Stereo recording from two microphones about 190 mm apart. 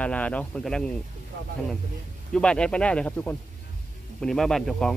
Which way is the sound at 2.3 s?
5° left (ahead or behind).